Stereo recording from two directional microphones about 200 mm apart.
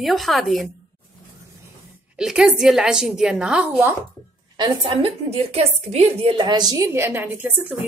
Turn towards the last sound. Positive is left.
turn(degrees=-10)  # may be behind; listen again after turning